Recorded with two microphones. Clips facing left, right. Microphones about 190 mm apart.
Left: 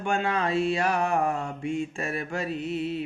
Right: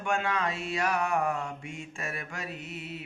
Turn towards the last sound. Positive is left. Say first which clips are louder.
# left 11 dB
turn(degrees=30)  # may be behind; listen again after turning